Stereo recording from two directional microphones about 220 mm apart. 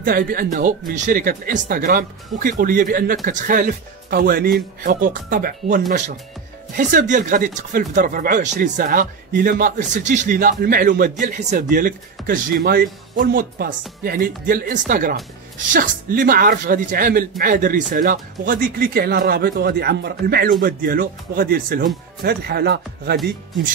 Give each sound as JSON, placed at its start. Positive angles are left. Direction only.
{"t": 0.0, "sound": "speech", "side_deg": -40}